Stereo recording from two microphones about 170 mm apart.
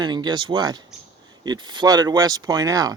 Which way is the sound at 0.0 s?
25° right (ahead or behind).